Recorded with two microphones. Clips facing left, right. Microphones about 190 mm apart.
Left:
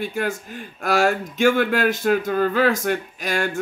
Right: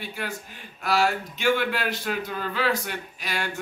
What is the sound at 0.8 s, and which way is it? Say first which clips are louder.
A man's voice: left 4 dB; 50° left (ahead or behind).